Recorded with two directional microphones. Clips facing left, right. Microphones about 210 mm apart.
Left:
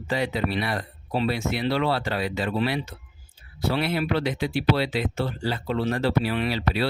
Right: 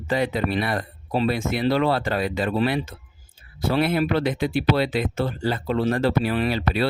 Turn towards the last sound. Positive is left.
turn(degrees=-50)  # may be behind; listen again after turning